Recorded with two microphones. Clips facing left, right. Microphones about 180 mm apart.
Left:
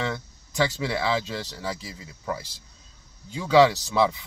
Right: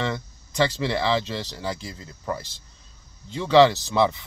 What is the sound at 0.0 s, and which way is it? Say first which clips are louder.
Speech: right 2 dB; 5° left (ahead or behind).